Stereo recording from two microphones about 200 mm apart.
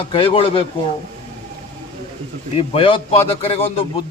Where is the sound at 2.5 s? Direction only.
25° left (ahead or behind).